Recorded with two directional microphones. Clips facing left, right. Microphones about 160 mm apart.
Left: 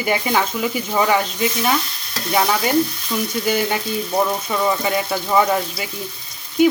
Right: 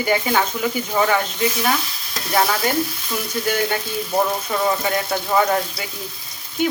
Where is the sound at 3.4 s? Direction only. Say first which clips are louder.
Even; 5° left (ahead or behind).